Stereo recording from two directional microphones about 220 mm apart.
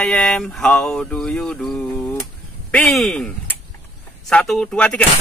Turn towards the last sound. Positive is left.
turn(degrees=5)  # may be behind; listen again after turning